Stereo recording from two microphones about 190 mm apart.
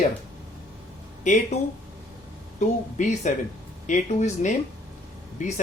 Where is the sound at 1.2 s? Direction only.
40° left (ahead or behind).